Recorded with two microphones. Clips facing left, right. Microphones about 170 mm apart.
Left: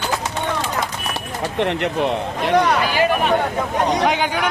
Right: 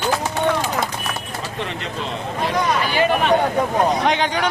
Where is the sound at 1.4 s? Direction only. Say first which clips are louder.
Left 12 dB; 65° left (ahead or behind).